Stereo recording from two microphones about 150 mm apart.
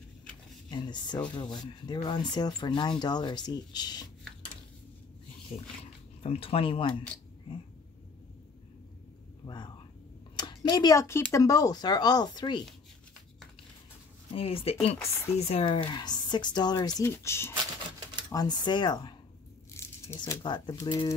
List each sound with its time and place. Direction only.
0.7 s speech: 30° left (ahead or behind)
6.2 s speech: 40° left (ahead or behind)
9.4 s a sound: 40° left (ahead or behind)
10.3 s speech: 30° left (ahead or behind)
14.3 s speech: 40° left (ahead or behind)
19.7 s a sound: 15° left (ahead or behind)
20.4 s speech: 30° left (ahead or behind)